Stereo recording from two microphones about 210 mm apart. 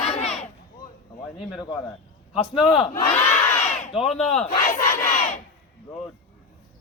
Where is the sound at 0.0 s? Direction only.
30° left (ahead or behind).